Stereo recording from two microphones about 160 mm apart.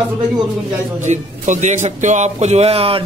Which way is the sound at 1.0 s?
50° right (ahead or behind).